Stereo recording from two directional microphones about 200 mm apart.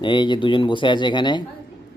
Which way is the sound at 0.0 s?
25° left (ahead or behind).